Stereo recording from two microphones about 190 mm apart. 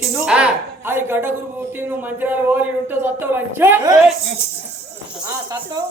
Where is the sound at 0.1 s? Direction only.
5° right (ahead or behind).